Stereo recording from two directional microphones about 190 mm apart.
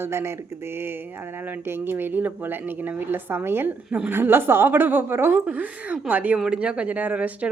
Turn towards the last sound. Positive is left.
turn(degrees=-10)  # may be behind; listen again after turning